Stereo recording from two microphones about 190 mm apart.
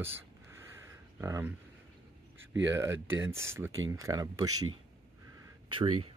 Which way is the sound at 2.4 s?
80° right.